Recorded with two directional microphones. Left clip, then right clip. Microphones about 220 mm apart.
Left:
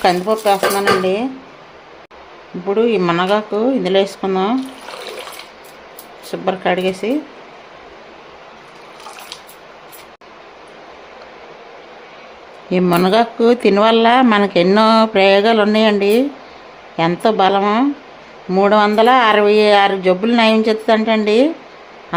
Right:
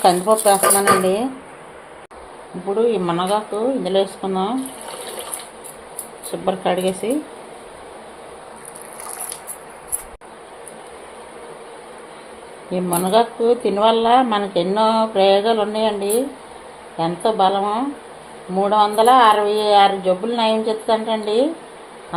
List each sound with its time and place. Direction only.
0.0 s speech: 10° left (ahead or behind)
2.6 s speech: 25° left (ahead or behind)
6.4 s speech: 15° left (ahead or behind)
12.7 s speech: 35° left (ahead or behind)